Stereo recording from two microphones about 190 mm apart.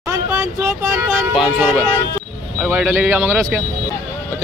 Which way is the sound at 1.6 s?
10° right (ahead or behind).